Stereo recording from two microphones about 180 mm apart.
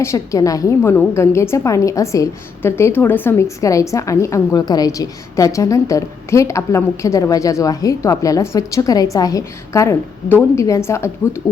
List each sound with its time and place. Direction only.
0.0 s a woman's voice: 15° left (ahead or behind)